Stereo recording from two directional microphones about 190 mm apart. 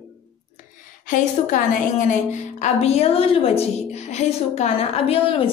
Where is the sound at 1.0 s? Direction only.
40° left (ahead or behind).